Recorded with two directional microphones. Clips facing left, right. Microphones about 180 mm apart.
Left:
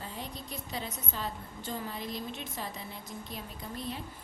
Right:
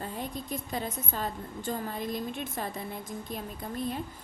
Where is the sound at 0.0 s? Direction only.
50° right (ahead or behind).